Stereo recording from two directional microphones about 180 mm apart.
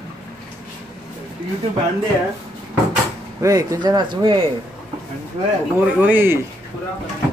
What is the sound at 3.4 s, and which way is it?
Speech, 20° right (ahead or behind).